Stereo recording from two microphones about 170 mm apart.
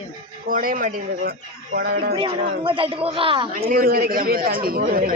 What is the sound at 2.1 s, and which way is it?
Speech, 30° right (ahead or behind).